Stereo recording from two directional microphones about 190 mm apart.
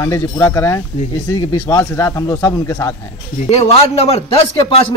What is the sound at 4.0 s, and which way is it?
Speech, 30° left (ahead or behind).